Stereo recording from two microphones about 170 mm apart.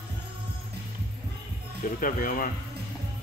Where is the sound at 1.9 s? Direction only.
55° left (ahead or behind).